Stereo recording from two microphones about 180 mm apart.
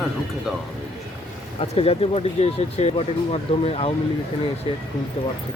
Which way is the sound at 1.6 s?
35° left (ahead or behind).